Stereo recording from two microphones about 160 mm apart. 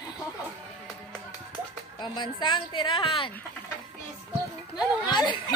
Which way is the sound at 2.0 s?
30° left (ahead or behind).